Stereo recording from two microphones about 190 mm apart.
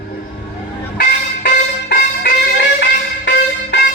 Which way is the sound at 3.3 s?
75° left (ahead or behind).